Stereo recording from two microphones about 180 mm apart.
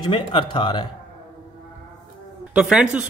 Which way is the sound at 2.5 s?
5° right (ahead or behind).